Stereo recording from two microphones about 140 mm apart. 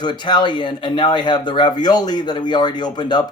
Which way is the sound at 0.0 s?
30° left (ahead or behind).